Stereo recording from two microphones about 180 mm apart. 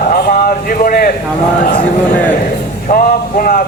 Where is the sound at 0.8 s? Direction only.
50° left (ahead or behind).